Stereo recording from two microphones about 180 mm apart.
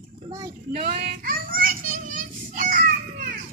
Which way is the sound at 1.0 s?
55° right (ahead or behind).